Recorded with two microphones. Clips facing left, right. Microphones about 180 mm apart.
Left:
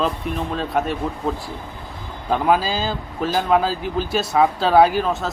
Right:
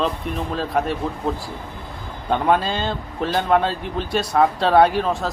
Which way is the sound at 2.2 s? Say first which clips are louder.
Even; 5° left (ahead or behind).